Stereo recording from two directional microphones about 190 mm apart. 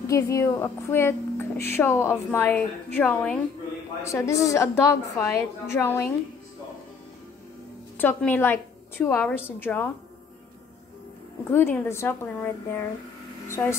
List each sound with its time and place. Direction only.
0.0 s speech: 15° left (ahead or behind)
8.0 s speech: 10° left (ahead or behind)
11.5 s speech: 10° left (ahead or behind)